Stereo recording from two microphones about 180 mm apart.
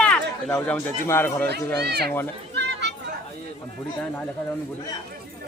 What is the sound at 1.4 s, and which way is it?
Speech, 65° right (ahead or behind).